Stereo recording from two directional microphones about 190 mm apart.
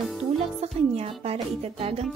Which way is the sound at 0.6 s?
35° right (ahead or behind).